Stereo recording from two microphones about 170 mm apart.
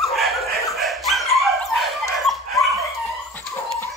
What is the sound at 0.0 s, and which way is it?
Dog, centre (ahead or behind).